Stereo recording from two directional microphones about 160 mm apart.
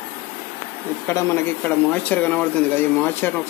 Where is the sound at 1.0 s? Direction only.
15° left (ahead or behind).